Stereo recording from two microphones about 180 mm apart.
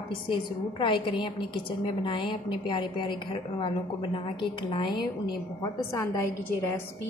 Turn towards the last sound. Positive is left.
turn(degrees=15)  # may be behind; listen again after turning